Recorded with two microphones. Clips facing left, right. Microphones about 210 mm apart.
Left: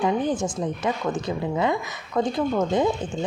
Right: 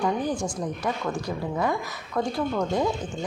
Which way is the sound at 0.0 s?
20° left (ahead or behind).